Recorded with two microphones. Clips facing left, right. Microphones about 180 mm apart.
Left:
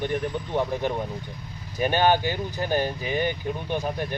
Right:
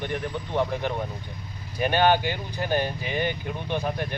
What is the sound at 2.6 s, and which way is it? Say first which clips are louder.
Speech: even; 10° left (ahead or behind).